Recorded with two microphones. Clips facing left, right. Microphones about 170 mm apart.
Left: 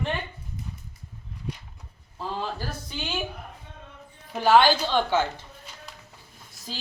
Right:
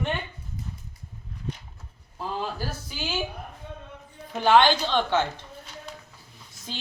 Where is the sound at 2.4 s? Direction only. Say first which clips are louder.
Right 1 dB; 5° right (ahead or behind).